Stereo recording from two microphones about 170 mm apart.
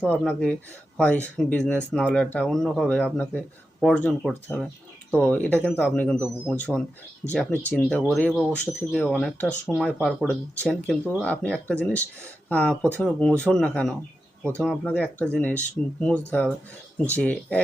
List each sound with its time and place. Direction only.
0.1 s speech: 5° left (ahead or behind)
10.6 s speech: 5° left (ahead or behind)